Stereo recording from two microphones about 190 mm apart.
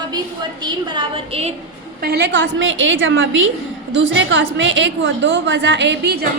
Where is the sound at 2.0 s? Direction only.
60° right (ahead or behind); by 3.5 s 85° right.